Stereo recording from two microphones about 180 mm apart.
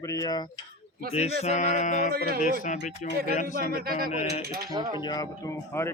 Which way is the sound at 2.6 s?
45° left (ahead or behind).